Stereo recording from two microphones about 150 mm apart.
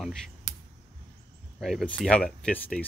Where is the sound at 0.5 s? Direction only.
20° left (ahead or behind).